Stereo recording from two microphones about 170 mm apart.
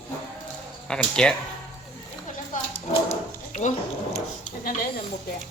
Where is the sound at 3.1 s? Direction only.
45° left (ahead or behind).